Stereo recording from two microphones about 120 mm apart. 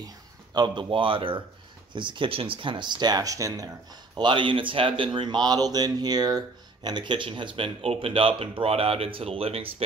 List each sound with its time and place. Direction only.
0.6 s a man's voice: 45° right (ahead or behind)
4.2 s a man's voice: 45° right (ahead or behind)